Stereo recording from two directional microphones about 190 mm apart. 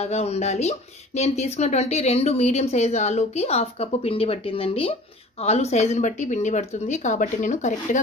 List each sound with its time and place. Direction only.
0.0 s speech: 35° left (ahead or behind)